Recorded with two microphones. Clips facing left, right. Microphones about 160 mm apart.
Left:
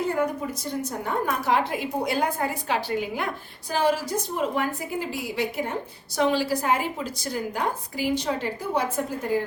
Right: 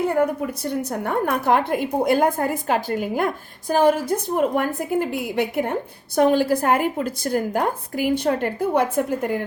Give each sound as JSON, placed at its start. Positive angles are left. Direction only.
{"t": 0.2, "sound": "a woman's voice", "side_deg": -65}